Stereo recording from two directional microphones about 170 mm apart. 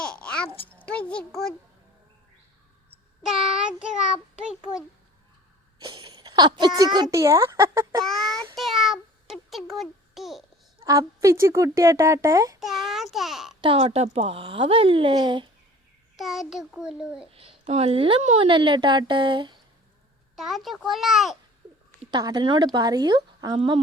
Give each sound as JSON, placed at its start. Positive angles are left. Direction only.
{"t": 0.0, "sound": "a sound", "side_deg": 5}
{"t": 0.9, "sound": "a child's voice", "side_deg": 5}
{"t": 3.2, "sound": "a child's voice", "side_deg": 0}
{"t": 5.8, "sound": "speech", "side_deg": -25}
{"t": 8.0, "sound": "a child's voice", "side_deg": 0}
{"t": 8.5, "sound": "a sound", "side_deg": 0}
{"t": 10.8, "sound": "speech", "side_deg": -20}
{"t": 12.5, "sound": "a child's voice", "side_deg": 0}
{"t": 13.6, "sound": "speech", "side_deg": -35}
{"t": 16.1, "sound": "a child's voice", "side_deg": 0}
{"t": 17.3, "sound": "a woman's voice", "side_deg": -35}
{"t": 20.3, "sound": "a child's voice", "side_deg": 0}
{"t": 22.1, "sound": "a woman's voice", "side_deg": -25}